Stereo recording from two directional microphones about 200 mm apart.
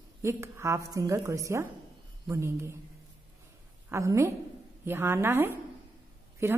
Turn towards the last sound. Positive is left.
turn(degrees=-10)  # may be behind; listen again after turning